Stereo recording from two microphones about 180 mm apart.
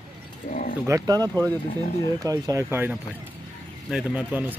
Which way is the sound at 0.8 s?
20° right (ahead or behind).